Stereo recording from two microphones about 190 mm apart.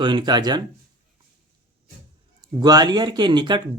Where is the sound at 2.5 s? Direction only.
20° right (ahead or behind).